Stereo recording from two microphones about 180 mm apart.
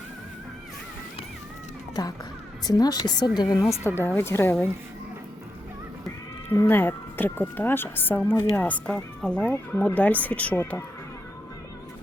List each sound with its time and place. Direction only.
2.0 s speech: 20° left (ahead or behind)
6.5 s speech: 15° left (ahead or behind)